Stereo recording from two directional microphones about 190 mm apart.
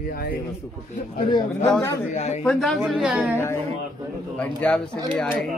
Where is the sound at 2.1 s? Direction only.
35° left (ahead or behind).